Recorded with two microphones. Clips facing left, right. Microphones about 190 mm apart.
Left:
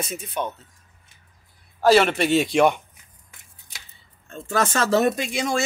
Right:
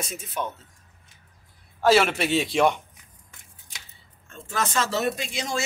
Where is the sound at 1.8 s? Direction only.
Centre (ahead or behind).